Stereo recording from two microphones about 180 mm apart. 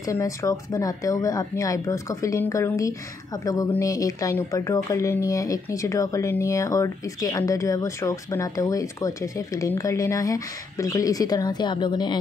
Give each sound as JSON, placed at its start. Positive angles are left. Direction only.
{"t": 0.0, "sound": "speech", "side_deg": 20}